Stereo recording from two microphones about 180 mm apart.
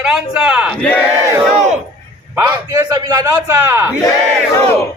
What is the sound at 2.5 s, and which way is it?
A man's voice, 20° right (ahead or behind).